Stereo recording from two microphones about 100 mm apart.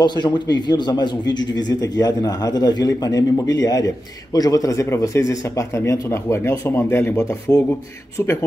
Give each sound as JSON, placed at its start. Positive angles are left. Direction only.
{"t": 0.0, "sound": "a man's voice", "side_deg": 50}